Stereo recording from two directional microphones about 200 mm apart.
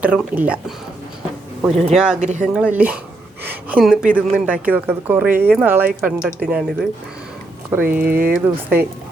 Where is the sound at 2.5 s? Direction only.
5° right (ahead or behind).